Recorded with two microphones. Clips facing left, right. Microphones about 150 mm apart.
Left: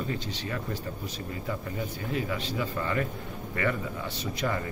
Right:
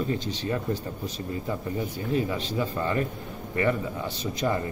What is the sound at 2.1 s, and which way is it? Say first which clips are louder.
Speech: right 5 dB; 30° right (ahead or behind).